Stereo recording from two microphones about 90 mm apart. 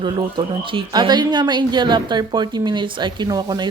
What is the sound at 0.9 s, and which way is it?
A woman's voice, 50° right (ahead or behind).